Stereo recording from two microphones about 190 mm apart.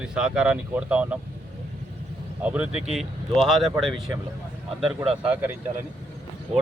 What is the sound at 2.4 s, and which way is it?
Speech, 5° right (ahead or behind).